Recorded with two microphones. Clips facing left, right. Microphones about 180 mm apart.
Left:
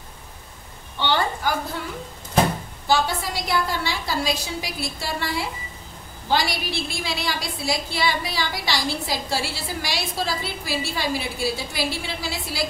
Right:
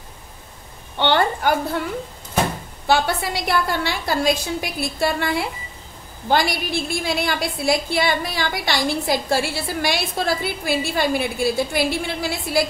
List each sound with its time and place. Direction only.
0.9 s a woman's voice: 60° right (ahead or behind)
2.9 s a woman's voice: 60° right (ahead or behind)